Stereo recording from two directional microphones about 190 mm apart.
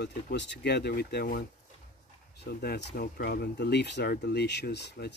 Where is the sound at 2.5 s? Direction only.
55° left (ahead or behind).